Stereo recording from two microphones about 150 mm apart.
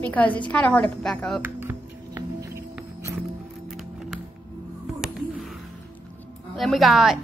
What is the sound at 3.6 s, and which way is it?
Music, centre (ahead or behind).